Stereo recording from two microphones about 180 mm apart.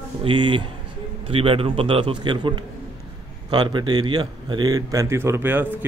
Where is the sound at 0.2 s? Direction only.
25° right (ahead or behind).